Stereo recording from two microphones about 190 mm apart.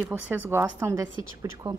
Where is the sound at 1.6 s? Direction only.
25° right (ahead or behind).